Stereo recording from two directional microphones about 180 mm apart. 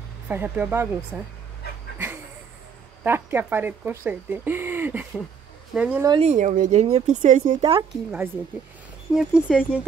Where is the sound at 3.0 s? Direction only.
10° right (ahead or behind).